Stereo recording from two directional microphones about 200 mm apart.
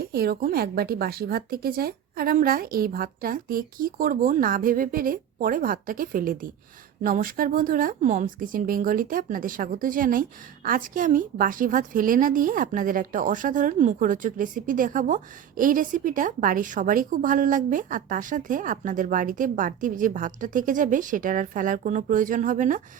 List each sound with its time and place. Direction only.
0.0 s a woman's voice: 50° right (ahead or behind)